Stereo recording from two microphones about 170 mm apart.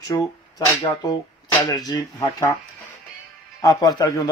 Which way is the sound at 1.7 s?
25° left (ahead or behind).